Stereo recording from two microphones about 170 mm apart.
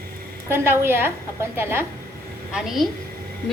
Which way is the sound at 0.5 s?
15° right (ahead or behind).